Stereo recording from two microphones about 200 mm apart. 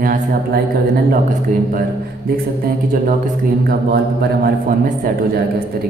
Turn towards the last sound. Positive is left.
turn(degrees=-50)  # may be behind; listen again after turning